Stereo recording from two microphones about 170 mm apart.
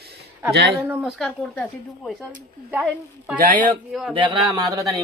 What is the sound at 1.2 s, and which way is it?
Speech, 10° left (ahead or behind).